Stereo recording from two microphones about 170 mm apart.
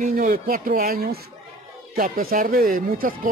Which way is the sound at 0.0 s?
55° right (ahead or behind).